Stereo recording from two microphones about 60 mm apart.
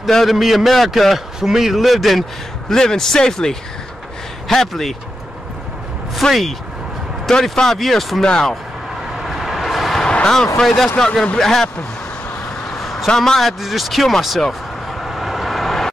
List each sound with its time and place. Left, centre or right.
0.0 s a man's voice: centre
6.2 s a man's voice: centre
9.2 s vehicle: centre
10.0 s a sound: centre
10.6 s speech: centre
12.8 s a man's voice: centre
14.4 s vehicle: centre